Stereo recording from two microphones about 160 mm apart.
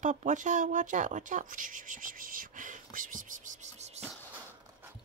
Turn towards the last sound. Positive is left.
turn(degrees=-45)  # may be behind; listen again after turning